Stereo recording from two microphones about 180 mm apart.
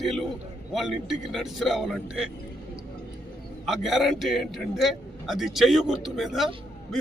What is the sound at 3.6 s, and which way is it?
A man's voice, centre (ahead or behind).